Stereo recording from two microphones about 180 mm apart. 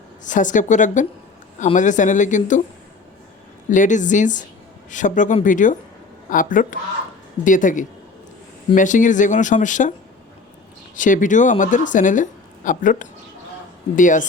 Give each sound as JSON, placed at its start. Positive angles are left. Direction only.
{"t": 0.3, "sound": "a woman's voice", "side_deg": 45}
{"t": 3.7, "sound": "a woman's voice", "side_deg": 45}
{"t": 10.9, "sound": "a woman's voice", "side_deg": 45}